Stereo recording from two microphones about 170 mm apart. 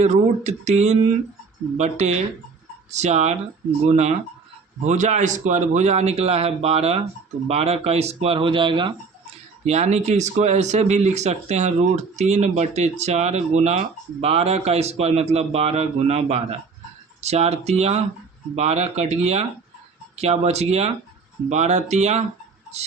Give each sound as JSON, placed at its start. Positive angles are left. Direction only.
{"t": 0.0, "sound": "speech", "side_deg": -45}
{"t": 9.6, "sound": "speech", "side_deg": -40}
{"t": 22.7, "sound": "a sound", "side_deg": -40}